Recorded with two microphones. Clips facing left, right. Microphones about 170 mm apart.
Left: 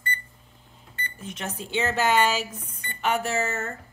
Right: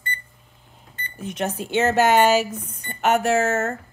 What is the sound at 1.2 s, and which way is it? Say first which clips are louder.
A woman's voice: right 9 dB; 65° right (ahead or behind).